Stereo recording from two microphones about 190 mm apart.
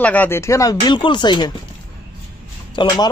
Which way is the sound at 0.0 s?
10° left (ahead or behind).